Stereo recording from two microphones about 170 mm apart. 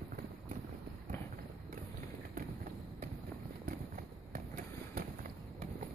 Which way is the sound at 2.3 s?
55° right (ahead or behind).